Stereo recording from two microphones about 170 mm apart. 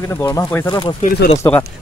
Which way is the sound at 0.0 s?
20° left (ahead or behind).